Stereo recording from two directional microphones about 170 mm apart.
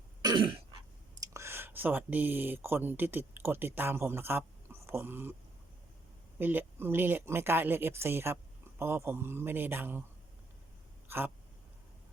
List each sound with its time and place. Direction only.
0.2 s throat clearing: 25° right (ahead or behind)
1.2 s speech: 15° right (ahead or behind)
6.4 s speech: 10° right (ahead or behind)
11.1 s speech: 10° right (ahead or behind)